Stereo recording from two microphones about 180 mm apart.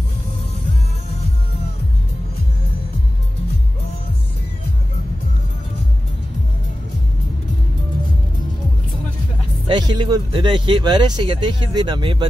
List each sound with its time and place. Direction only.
9.7 s speech: 25° right (ahead or behind)